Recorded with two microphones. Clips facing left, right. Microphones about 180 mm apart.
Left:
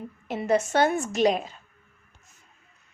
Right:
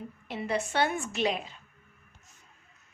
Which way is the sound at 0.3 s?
45° left (ahead or behind).